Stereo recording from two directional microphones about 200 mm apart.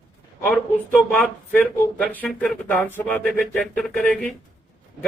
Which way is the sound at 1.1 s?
5° left (ahead or behind).